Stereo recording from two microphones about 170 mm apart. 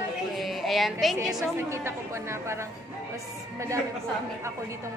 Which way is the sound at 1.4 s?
15° right (ahead or behind).